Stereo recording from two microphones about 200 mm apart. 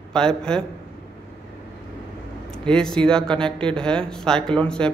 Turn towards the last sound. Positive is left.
turn(degrees=5)  # may be behind; listen again after turning